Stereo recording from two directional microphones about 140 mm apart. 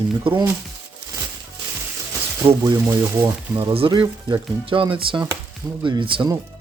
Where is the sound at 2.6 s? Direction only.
20° right (ahead or behind).